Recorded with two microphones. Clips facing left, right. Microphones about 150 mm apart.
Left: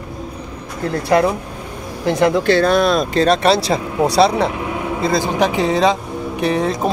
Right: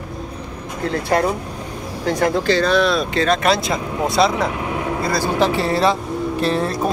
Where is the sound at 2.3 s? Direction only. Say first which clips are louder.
Left 3 dB; 55° left (ahead or behind); by 4.5 s 30° left (ahead or behind).